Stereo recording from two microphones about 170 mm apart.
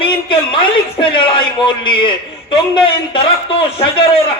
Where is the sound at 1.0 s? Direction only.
30° left (ahead or behind).